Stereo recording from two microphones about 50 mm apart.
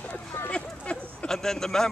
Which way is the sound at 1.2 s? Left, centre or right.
Centre.